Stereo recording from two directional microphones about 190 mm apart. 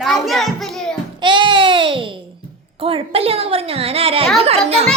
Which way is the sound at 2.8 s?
30° right (ahead or behind).